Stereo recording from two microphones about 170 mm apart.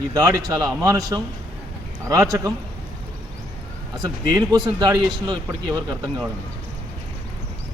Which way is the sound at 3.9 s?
20° right (ahead or behind).